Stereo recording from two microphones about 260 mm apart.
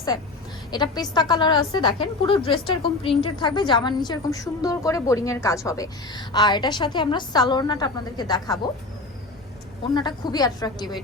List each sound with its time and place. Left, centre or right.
0.7 s a woman's voice: centre
9.9 s a woman's voice: centre